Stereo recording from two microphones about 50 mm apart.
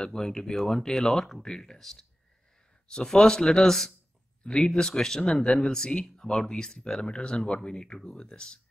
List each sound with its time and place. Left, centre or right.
0.0 s speech: centre
4.4 s speech: centre